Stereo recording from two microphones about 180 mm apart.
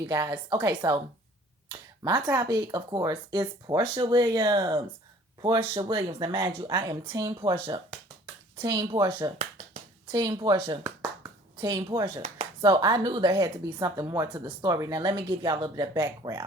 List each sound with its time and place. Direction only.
0.1 s speech: 20° right (ahead or behind)
8.6 s speech: 20° right (ahead or behind)
12.6 s speech: 20° right (ahead or behind)